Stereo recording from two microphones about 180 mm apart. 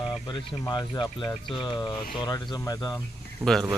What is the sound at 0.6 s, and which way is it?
Speech, 25° left (ahead or behind).